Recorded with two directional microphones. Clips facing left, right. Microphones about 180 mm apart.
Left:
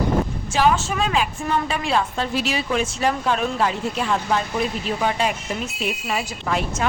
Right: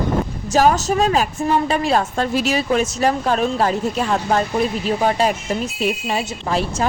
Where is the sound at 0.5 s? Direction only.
40° right (ahead or behind).